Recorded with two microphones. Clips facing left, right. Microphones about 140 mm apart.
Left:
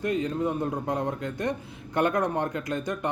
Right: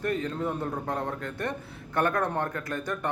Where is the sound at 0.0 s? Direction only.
15° left (ahead or behind).